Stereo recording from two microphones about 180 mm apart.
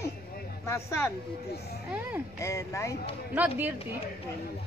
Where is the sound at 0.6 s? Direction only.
15° left (ahead or behind).